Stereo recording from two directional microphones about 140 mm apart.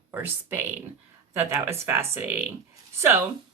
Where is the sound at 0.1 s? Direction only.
15° right (ahead or behind).